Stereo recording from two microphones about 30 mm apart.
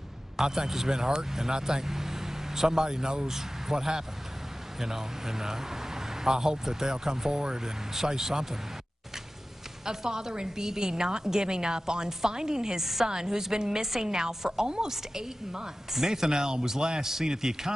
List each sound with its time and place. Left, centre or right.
0.4 s a man's voice: centre
9.8 s a woman's voice: right